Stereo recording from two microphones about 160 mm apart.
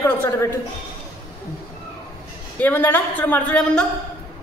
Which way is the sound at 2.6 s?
10° left (ahead or behind).